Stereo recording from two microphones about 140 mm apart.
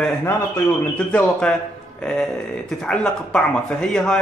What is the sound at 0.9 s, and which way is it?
A man's voice, 5° left (ahead or behind).